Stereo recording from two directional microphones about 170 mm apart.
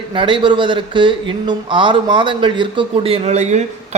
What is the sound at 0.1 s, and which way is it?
Speech, 30° right (ahead or behind).